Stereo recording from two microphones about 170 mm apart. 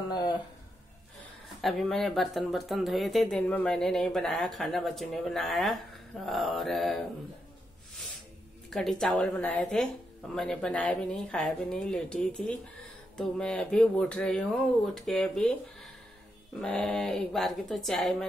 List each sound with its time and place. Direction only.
0.1 s speech: 25° left (ahead or behind)
1.6 s speech: centre (ahead or behind)
8.6 s speech: 5° left (ahead or behind)